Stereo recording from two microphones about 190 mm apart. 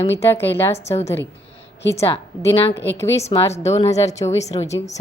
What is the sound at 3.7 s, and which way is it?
Speech, 15° left (ahead or behind).